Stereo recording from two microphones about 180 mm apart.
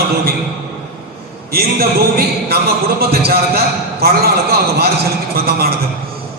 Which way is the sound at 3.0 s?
60° right (ahead or behind).